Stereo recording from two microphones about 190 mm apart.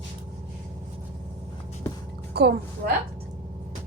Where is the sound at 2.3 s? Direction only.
55° right (ahead or behind).